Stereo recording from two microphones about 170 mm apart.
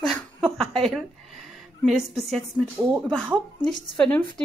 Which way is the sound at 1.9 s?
Centre (ahead or behind).